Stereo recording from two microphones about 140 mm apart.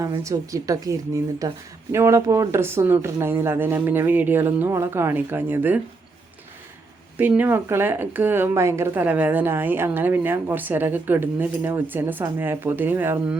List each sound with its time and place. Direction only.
0.3 s speech: 25° right (ahead or behind)
7.2 s speech: 15° right (ahead or behind)